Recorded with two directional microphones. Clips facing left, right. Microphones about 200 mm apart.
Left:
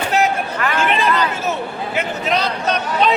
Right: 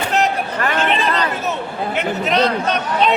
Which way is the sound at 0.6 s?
40° right (ahead or behind).